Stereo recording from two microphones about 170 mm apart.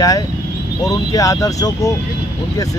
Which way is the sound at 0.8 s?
20° left (ahead or behind).